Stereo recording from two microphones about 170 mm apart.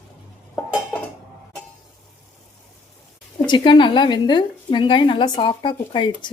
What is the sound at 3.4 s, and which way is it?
A woman's voice, 25° left (ahead or behind).